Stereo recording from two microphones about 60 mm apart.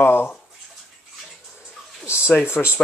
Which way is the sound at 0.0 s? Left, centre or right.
Left.